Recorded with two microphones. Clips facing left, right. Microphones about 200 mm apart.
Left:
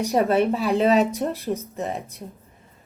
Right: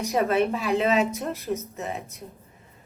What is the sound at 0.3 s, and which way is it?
Speech, 35° left (ahead or behind).